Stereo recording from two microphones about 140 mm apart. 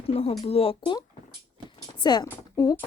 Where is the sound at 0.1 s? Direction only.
45° left (ahead or behind).